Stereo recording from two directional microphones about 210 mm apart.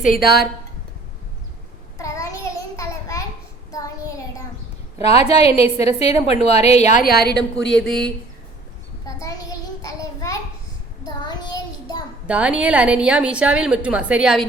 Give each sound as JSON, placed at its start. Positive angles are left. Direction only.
{"t": 0.2, "sound": "a woman's voice", "side_deg": 50}
{"t": 2.0, "sound": "a sound", "side_deg": 15}
{"t": 5.0, "sound": "a woman's voice", "side_deg": 30}
{"t": 7.7, "sound": "a woman's voice", "side_deg": 5}
{"t": 9.0, "sound": "child singing", "side_deg": 15}
{"t": 12.2, "sound": "a woman's voice", "side_deg": -5}